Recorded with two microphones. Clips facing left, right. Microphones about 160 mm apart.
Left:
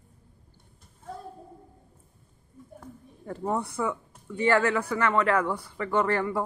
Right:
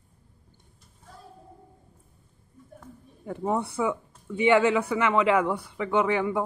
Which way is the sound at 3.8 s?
5° right (ahead or behind).